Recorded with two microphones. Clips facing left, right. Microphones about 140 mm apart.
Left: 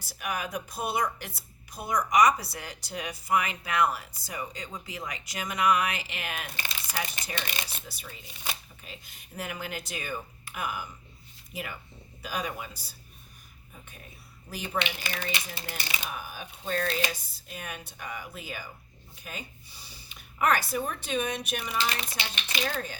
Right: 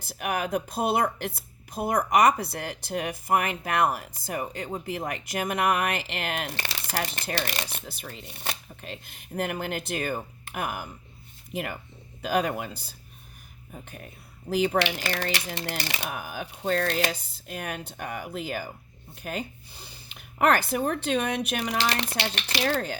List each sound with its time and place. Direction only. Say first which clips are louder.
0.2 s speech: right 6 dB; 60° right (ahead or behind)
13.7 s speech: right 7 dB; 65° right (ahead or behind)